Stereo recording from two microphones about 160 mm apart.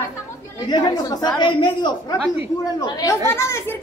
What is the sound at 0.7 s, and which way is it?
A woman's voice, 25° left (ahead or behind).